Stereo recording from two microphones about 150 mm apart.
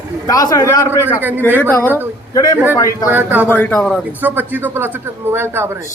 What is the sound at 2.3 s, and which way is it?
Speech, 25° left (ahead or behind).